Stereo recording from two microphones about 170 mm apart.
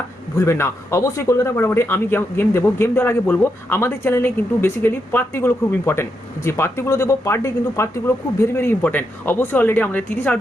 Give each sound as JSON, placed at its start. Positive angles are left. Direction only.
{"t": 0.3, "sound": "speech", "side_deg": 15}